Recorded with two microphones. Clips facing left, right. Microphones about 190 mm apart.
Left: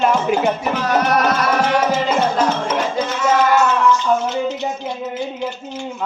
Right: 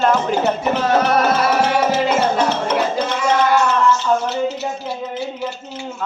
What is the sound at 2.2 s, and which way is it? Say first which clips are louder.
Music: even; 5° right (ahead or behind).